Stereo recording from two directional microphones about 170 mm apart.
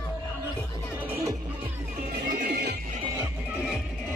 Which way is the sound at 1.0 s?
10° right (ahead or behind).